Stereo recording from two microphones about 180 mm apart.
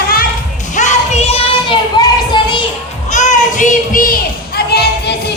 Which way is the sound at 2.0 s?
25° left (ahead or behind).